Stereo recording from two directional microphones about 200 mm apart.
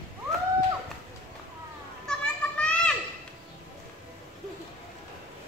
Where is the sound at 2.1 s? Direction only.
5° left (ahead or behind).